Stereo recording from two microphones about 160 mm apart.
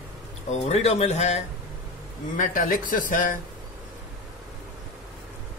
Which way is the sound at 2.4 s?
60° left (ahead or behind).